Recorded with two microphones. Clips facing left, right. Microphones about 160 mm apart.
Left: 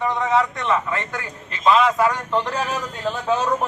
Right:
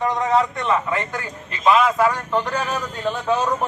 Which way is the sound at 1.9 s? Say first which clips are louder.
Right 1 dB; centre (ahead or behind).